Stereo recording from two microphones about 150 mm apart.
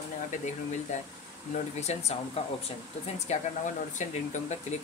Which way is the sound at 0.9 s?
50° left (ahead or behind).